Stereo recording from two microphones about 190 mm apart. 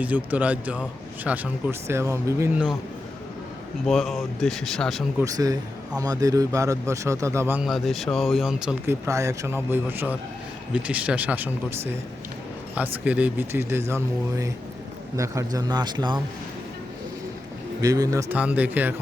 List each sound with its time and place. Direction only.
0.0 s a man's voice: 10° right (ahead or behind)
3.8 s speech: centre (ahead or behind)
5.2 s a man's voice: 20° right (ahead or behind)
9.0 s a man's voice: 15° right (ahead or behind)
17.7 s a man's voice: 20° right (ahead or behind)